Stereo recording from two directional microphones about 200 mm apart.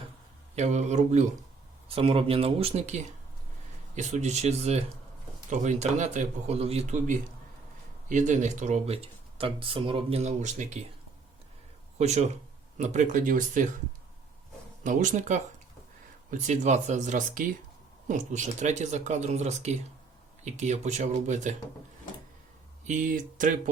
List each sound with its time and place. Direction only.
0.5 s speech: 35° right (ahead or behind)
11.9 s speech: 35° right (ahead or behind)
14.8 s speech: 40° right (ahead or behind)
22.9 s speech: 40° right (ahead or behind)